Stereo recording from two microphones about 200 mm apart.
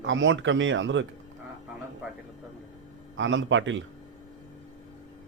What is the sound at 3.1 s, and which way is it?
Speech, 70° right (ahead or behind).